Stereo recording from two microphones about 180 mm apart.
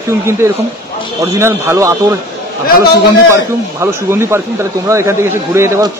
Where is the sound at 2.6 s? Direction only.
55° left (ahead or behind).